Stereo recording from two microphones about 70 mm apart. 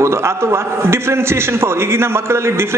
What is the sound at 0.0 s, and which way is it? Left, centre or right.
A man's voice, right.